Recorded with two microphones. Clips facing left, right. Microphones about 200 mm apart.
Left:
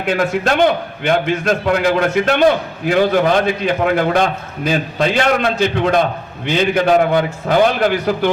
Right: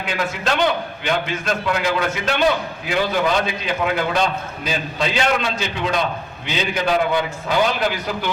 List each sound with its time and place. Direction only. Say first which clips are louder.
0.0 s a man's voice: left 7 dB; 50° left (ahead or behind)